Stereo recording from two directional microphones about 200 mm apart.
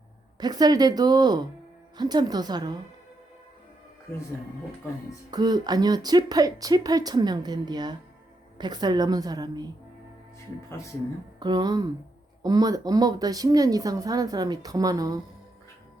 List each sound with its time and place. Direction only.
0.3 s speech: 20° right (ahead or behind)
5.3 s speech: 20° right (ahead or behind)
10.7 s speech: 15° left (ahead or behind)
11.3 s speech: 20° right (ahead or behind)